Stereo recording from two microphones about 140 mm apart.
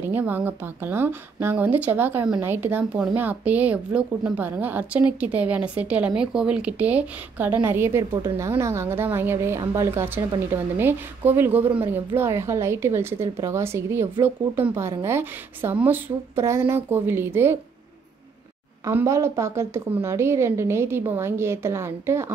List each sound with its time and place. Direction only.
0.1 s a woman's voice: 10° right (ahead or behind)
18.9 s a woman's voice: 20° right (ahead or behind)